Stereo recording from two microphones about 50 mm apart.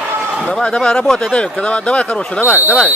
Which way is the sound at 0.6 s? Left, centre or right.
Centre.